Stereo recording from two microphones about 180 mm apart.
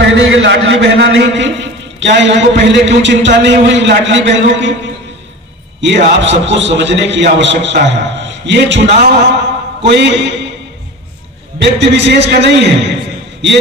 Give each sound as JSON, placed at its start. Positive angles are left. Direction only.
{"t": 0.1, "sound": "a man's voice", "side_deg": -90}
{"t": 5.8, "sound": "a man's voice", "side_deg": -75}
{"t": 11.6, "sound": "a man's voice", "side_deg": -75}